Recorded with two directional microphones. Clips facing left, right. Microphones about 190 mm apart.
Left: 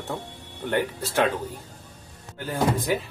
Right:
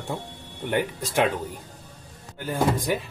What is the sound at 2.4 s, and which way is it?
Speech, 15° right (ahead or behind).